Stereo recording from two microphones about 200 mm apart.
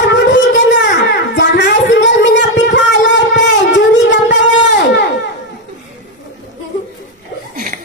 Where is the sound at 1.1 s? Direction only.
60° left (ahead or behind).